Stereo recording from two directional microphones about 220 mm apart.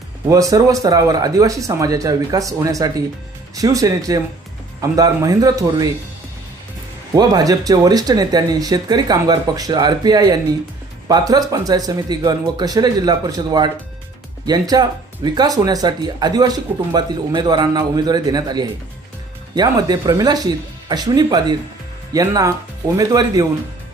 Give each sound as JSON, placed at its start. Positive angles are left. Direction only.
{"t": 0.3, "sound": "speech", "side_deg": -15}
{"t": 7.2, "sound": "speech", "side_deg": -15}